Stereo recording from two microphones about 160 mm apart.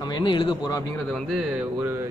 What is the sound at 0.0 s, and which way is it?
Speech, 30° left (ahead or behind).